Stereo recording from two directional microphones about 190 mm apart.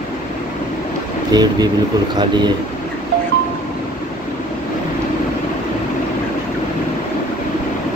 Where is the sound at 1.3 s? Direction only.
20° right (ahead or behind).